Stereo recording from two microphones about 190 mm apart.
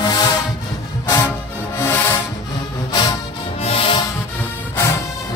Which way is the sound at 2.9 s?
20° left (ahead or behind).